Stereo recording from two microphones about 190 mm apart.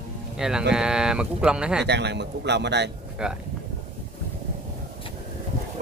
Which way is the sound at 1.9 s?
65° right (ahead or behind).